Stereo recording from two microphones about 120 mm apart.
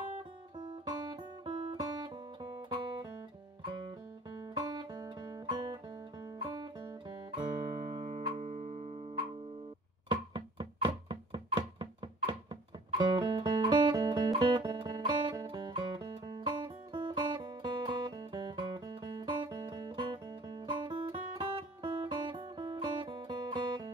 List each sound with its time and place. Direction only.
0.2 s guitar: 40° right (ahead or behind)
4.4 s guitar: 35° right (ahead or behind)
8.1 s music: 75° right (ahead or behind)
10.0 s music: 40° right (ahead or behind)